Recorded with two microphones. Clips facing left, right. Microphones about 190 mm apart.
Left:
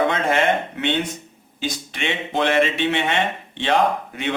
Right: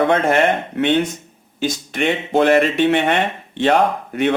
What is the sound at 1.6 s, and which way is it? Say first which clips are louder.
Speech: right 7 dB; 45° right (ahead or behind).